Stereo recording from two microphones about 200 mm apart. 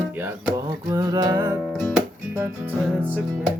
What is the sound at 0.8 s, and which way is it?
Music, 20° right (ahead or behind).